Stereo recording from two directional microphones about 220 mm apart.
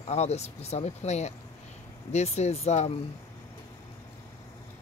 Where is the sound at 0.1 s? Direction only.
30° left (ahead or behind).